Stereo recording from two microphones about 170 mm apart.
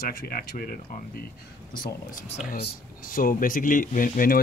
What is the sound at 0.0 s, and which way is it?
Speech, 55° left (ahead or behind).